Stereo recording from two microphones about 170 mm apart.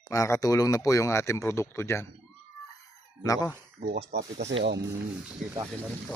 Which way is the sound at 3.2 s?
20° left (ahead or behind).